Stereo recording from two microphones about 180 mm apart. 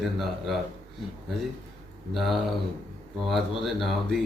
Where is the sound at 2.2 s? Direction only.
Centre (ahead or behind).